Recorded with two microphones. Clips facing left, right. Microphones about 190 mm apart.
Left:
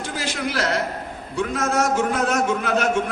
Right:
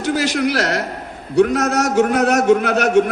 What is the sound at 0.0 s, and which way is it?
A man's voice, 70° right (ahead or behind).